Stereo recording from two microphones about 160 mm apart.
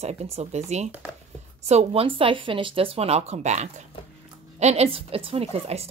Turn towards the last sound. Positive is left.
turn(degrees=-40)  # may be behind; listen again after turning